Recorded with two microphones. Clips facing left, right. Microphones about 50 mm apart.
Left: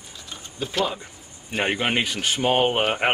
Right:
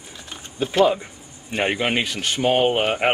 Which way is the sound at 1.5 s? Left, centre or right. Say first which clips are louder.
Right 2 dB; centre.